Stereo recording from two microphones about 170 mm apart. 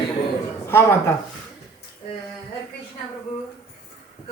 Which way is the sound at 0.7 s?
15° left (ahead or behind).